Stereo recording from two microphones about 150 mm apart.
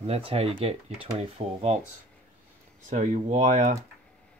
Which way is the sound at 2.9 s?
55° right (ahead or behind).